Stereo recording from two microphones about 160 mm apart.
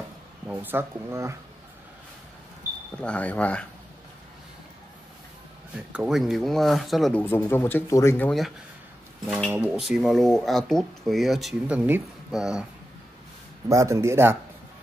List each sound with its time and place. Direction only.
0.5 s speech: 10° right (ahead or behind)
3.0 s speech: 10° left (ahead or behind)
5.9 s speech: 5° right (ahead or behind); by 8.3 s 15° left (ahead or behind)
9.5 s speech: 5° right (ahead or behind)
13.7 s speech: 20° right (ahead or behind)